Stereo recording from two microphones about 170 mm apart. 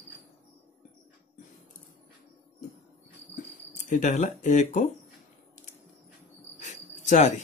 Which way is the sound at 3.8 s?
45° left (ahead or behind).